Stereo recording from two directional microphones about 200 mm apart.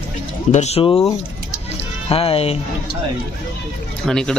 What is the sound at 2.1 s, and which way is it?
Speech, 30° left (ahead or behind).